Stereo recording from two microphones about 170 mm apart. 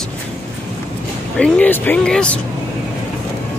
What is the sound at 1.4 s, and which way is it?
Speech, 10° left (ahead or behind).